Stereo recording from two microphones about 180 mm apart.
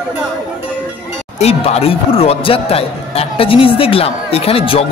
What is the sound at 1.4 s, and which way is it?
Speech, 35° left (ahead or behind).